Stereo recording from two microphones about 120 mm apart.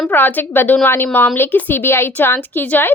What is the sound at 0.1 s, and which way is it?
A woman's voice, 15° left (ahead or behind).